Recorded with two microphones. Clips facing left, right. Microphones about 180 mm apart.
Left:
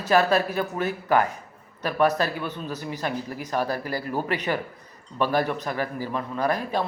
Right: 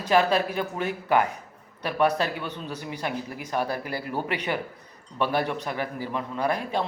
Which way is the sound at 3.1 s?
40° left (ahead or behind).